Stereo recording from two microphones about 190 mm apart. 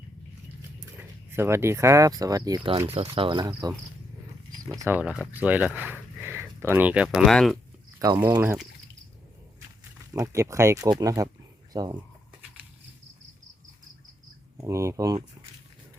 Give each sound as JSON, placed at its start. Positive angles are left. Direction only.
{"t": 0.9, "sound": "speech", "side_deg": -15}
{"t": 4.8, "sound": "speech", "side_deg": -10}
{"t": 7.9, "sound": "speech", "side_deg": -20}
{"t": 10.2, "sound": "speech", "side_deg": -15}
{"t": 14.6, "sound": "speech", "side_deg": -15}